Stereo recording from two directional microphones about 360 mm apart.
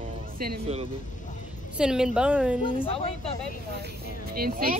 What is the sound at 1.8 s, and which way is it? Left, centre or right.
A woman's voice, centre.